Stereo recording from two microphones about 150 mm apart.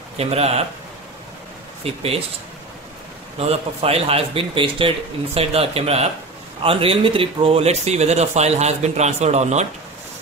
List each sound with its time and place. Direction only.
0.2 s speech: 45° right (ahead or behind)
1.8 s a man's voice: 40° right (ahead or behind)
3.3 s a man's voice: 45° right (ahead or behind)